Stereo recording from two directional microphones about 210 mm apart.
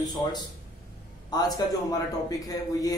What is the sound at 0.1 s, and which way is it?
A man's voice, 20° left (ahead or behind).